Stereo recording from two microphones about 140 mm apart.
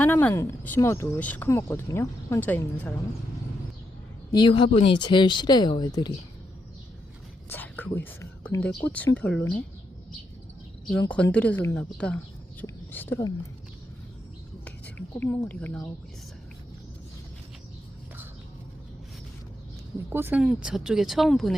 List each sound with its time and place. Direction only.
0.0 s speech: 10° left (ahead or behind)
4.3 s speech: 30° left (ahead or behind)
7.5 s speech: 15° left (ahead or behind)
11.1 s a woman's voice: 10° left (ahead or behind)
14.6 s speech: 10° left (ahead or behind)
20.1 s speech: 15° right (ahead or behind); by 21.5 s centre (ahead or behind)